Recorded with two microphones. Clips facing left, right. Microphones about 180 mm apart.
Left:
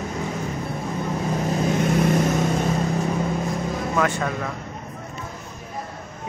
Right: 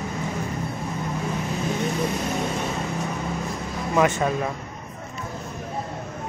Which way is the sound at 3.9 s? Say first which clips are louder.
Right 4 dB; 20° right (ahead or behind).